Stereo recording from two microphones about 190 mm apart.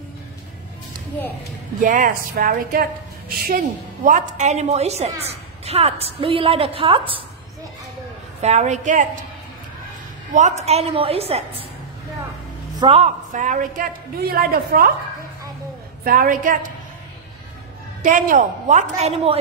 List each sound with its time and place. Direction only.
1.8 s a woman's voice: 45° right (ahead or behind); by 7.2 s 30° right (ahead or behind)
8.4 s a woman's voice: 35° right (ahead or behind)
10.3 s a woman's voice: 35° right (ahead or behind)
12.8 s a woman's voice: 35° right (ahead or behind); by 14.9 s 50° right (ahead or behind)
16.0 s a woman's voice: 50° right (ahead or behind)
18.0 s a woman's voice: 45° right (ahead or behind)